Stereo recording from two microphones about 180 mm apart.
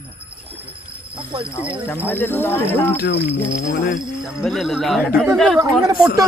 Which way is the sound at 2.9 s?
65° left (ahead or behind).